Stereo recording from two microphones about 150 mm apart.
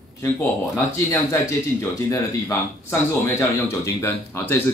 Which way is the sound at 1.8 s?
20° left (ahead or behind).